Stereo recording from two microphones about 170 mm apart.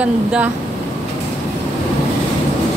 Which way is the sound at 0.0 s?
5° right (ahead or behind).